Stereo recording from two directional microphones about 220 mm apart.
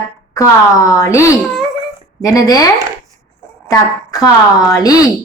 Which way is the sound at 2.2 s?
15° left (ahead or behind).